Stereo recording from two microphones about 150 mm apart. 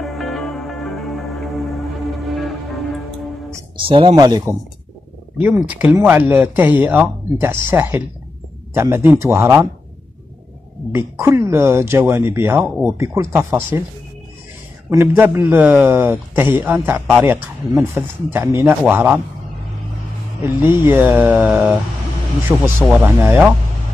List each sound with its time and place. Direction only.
0.0 s music: centre (ahead or behind)
3.8 s speech: 35° right (ahead or behind)
4.1 s speech: 25° right (ahead or behind)
5.4 s a man's voice: 10° right (ahead or behind)
11.0 s a man's voice: 15° right (ahead or behind)
14.9 s a man's voice: 15° right (ahead or behind)
20.6 s a man's voice: 15° right (ahead or behind)